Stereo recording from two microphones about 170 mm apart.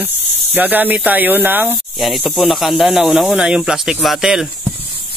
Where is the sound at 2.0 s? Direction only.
Centre (ahead or behind).